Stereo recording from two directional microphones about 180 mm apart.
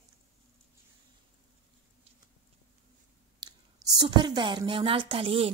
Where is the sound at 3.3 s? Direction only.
25° right (ahead or behind).